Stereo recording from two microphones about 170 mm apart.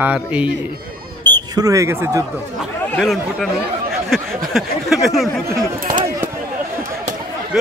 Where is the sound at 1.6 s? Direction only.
20° right (ahead or behind).